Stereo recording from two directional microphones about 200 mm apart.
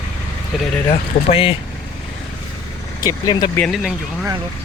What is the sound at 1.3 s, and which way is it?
Speech, 25° left (ahead or behind).